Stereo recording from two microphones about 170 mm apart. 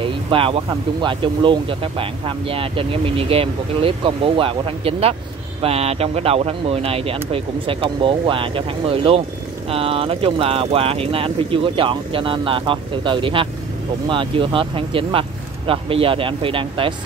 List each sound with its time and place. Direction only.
0.0 s speech: 30° right (ahead or behind)